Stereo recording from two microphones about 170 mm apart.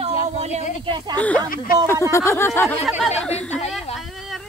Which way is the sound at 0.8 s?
25° right (ahead or behind).